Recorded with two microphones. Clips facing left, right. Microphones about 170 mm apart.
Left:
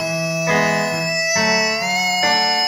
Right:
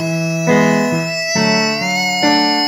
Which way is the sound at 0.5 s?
40° right (ahead or behind).